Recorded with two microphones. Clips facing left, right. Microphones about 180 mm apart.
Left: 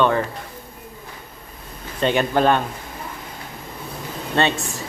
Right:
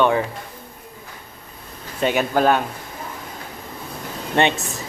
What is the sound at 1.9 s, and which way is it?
Speech, 5° right (ahead or behind).